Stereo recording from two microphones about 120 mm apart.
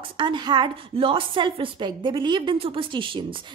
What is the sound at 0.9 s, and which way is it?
A woman's voice, 50° right (ahead or behind).